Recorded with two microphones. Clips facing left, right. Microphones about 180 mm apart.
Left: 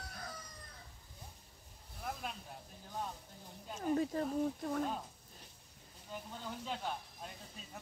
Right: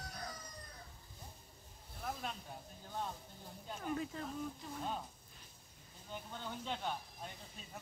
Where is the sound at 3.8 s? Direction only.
40° left (ahead or behind).